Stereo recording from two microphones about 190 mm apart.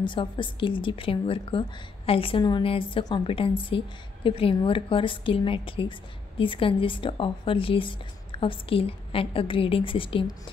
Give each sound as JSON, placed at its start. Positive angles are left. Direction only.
{"t": 0.0, "sound": "speech", "side_deg": 25}